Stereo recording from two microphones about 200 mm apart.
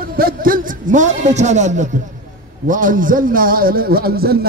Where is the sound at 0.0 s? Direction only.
50° right (ahead or behind).